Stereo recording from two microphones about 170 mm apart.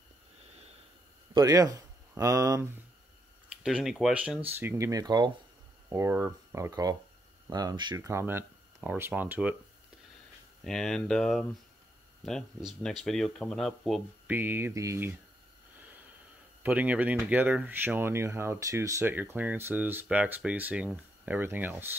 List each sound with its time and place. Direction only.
1.3 s speech: 20° right (ahead or behind)
3.6 s speech: centre (ahead or behind)
4.6 s speech: 15° right (ahead or behind)
5.9 s speech: 15° right (ahead or behind)
10.6 s speech: centre (ahead or behind)
14.3 s speech: 10° right (ahead or behind)
16.6 s speech: 10° right (ahead or behind)